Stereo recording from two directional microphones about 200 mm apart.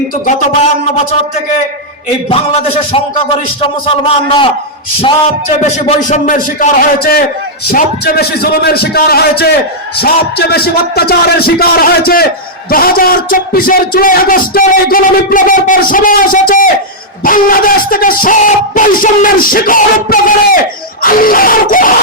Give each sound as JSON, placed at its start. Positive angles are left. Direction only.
{"t": 0.3, "sound": "a man's voice", "side_deg": 35}
{"t": 2.3, "sound": "a man's voice", "side_deg": 30}
{"t": 5.8, "sound": "a man's voice", "side_deg": 35}